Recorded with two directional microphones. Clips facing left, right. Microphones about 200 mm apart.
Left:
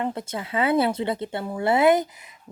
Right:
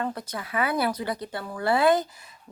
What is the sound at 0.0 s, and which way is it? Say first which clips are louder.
Speech: left 3 dB; 25° left (ahead or behind).